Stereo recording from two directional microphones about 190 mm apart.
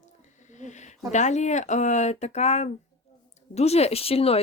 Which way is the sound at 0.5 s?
40° left (ahead or behind).